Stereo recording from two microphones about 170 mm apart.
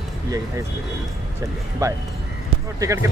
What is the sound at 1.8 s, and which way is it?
Speech, 15° right (ahead or behind).